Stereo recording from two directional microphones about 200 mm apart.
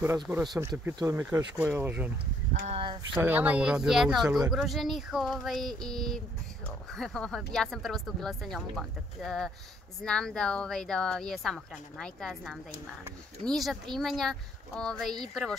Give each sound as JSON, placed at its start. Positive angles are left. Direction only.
{"t": 0.0, "sound": "speech", "side_deg": -10}
{"t": 2.6, "sound": "speech", "side_deg": -25}
{"t": 3.2, "sound": "speech", "side_deg": -10}